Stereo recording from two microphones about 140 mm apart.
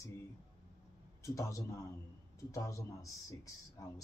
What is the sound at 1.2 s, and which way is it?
A man's voice, 25° left (ahead or behind).